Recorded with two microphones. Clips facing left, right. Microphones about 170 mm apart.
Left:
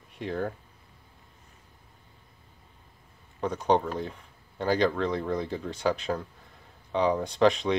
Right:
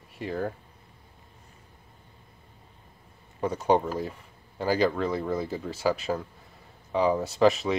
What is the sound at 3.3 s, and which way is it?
Speech, 10° right (ahead or behind).